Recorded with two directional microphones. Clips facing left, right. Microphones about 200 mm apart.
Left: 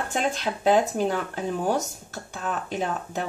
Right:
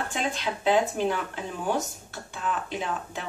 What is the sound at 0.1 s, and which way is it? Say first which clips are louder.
Speech: left 3 dB; 45° left (ahead or behind).